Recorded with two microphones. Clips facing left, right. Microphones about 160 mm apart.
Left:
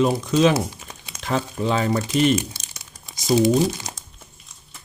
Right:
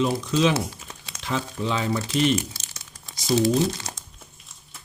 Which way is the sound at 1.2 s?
45° left (ahead or behind).